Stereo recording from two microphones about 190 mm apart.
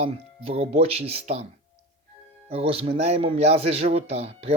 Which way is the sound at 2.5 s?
30° right (ahead or behind).